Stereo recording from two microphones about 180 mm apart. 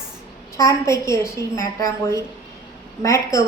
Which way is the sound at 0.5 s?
15° left (ahead or behind).